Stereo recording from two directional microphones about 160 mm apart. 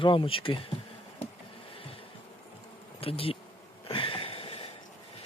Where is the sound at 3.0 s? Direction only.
35° left (ahead or behind).